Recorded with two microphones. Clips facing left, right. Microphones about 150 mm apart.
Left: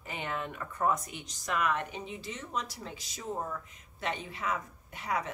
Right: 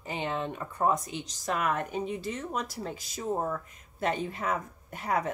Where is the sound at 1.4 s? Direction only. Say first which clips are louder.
Right 2 dB; 40° right (ahead or behind).